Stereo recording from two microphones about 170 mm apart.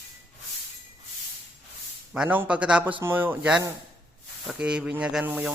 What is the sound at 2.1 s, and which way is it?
Speech, 5° right (ahead or behind).